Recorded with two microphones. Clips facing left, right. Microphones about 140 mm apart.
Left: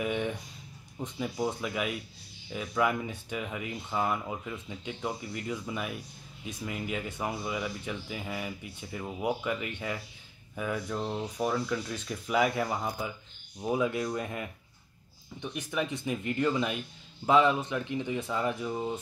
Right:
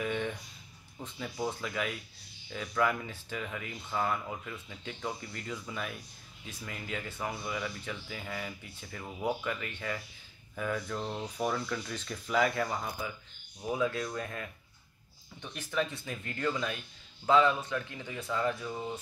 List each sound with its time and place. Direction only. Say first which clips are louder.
0.0 s speech: left 3 dB; 10° left (ahead or behind)
15.5 s speech: even; 15° left (ahead or behind)